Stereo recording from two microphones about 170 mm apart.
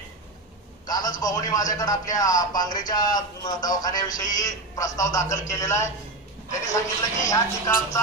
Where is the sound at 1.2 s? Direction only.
20° left (ahead or behind).